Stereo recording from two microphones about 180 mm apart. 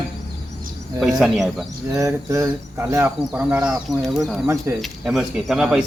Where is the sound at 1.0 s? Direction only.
Centre (ahead or behind).